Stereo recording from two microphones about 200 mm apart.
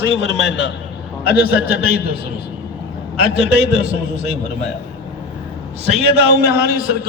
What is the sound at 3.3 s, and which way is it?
A man's voice, 55° right (ahead or behind).